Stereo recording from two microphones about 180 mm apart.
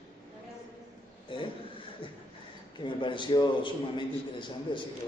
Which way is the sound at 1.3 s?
30° left (ahead or behind).